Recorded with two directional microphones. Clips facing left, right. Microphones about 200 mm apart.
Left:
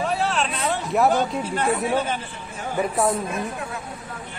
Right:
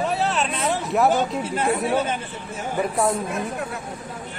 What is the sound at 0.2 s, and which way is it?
Chatter, centre (ahead or behind).